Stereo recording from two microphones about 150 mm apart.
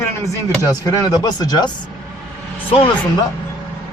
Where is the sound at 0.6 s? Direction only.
25° left (ahead or behind).